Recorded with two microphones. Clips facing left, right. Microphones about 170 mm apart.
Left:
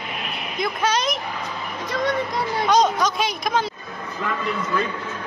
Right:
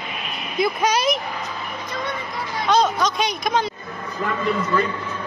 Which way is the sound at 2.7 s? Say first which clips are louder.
Right 1 dB; 15° left (ahead or behind).